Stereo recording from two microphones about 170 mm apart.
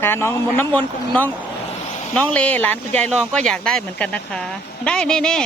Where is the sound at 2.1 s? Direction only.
5° left (ahead or behind).